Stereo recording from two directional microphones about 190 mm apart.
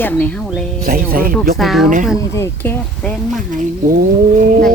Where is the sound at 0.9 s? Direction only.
50° right (ahead or behind).